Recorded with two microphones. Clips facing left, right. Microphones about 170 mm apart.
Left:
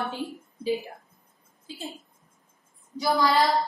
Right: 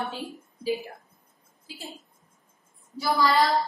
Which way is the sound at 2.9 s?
20° left (ahead or behind).